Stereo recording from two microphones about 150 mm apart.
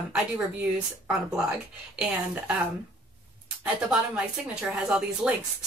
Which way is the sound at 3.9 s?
5° right (ahead or behind).